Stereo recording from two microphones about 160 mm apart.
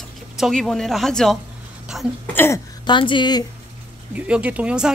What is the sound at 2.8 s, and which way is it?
Speech, 30° left (ahead or behind).